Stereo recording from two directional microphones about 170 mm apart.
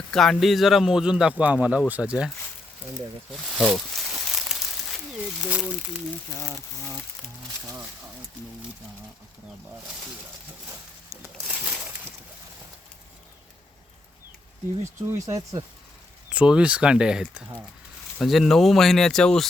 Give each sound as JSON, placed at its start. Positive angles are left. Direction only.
{"t": 0.1, "sound": "speech", "side_deg": 0}
{"t": 3.3, "sound": "crumpling", "side_deg": 0}
{"t": 5.4, "sound": "speech", "side_deg": -10}
{"t": 11.1, "sound": "a sound", "side_deg": -10}
{"t": 15.0, "sound": "speech", "side_deg": -15}
{"t": 16.3, "sound": "speech", "side_deg": -5}